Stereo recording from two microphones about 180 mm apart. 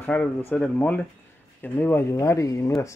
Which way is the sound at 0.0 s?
10° left (ahead or behind).